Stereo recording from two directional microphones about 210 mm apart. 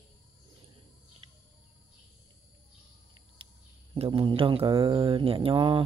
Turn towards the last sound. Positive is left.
turn(degrees=-25)  # may be behind; listen again after turning